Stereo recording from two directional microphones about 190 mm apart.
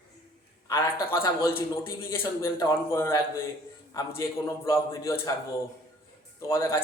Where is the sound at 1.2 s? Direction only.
20° left (ahead or behind).